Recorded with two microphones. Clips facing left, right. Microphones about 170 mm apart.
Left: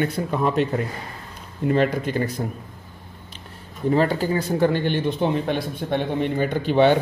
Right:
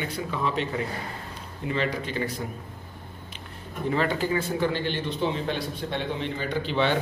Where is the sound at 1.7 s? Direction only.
50° left (ahead or behind).